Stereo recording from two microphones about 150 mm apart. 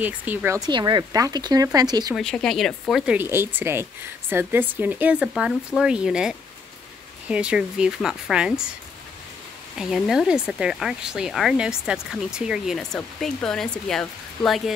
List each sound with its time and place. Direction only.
0.0 s speech: 10° right (ahead or behind)
0.6 s speech: 30° right (ahead or behind)
2.1 s speech: 5° left (ahead or behind)
9.8 s speech: 5° right (ahead or behind)